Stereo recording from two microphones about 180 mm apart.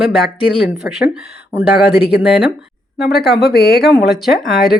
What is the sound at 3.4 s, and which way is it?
Speech, 60° left (ahead or behind).